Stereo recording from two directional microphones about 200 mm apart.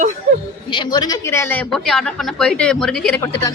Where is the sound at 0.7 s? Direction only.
20° left (ahead or behind); by 3.2 s 5° left (ahead or behind).